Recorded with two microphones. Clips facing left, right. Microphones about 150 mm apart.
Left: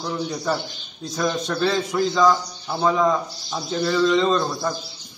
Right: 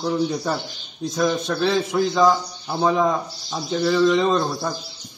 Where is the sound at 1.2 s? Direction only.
10° right (ahead or behind).